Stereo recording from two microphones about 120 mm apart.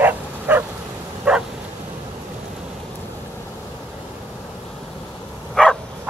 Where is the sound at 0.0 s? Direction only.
15° right (ahead or behind).